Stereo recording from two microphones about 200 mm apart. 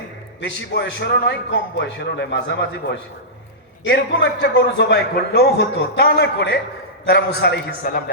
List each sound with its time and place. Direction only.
0.4 s a man's voice: 60° left (ahead or behind)